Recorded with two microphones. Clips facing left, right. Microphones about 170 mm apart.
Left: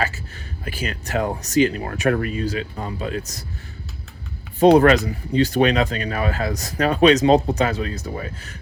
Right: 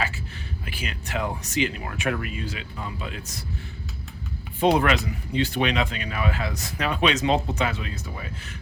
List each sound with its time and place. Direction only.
0.6 s speech: 40° left (ahead or behind)
4.6 s speech: 40° left (ahead or behind)